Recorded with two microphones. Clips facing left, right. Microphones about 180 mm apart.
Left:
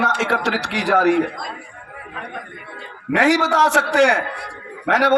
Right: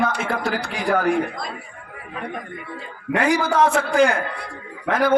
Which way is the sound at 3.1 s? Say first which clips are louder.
Left 3 dB; 90° left.